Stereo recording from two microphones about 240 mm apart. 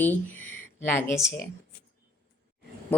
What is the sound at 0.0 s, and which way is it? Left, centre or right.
Speech, centre.